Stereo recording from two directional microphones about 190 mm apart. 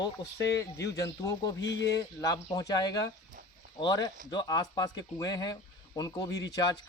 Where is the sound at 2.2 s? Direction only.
20° left (ahead or behind).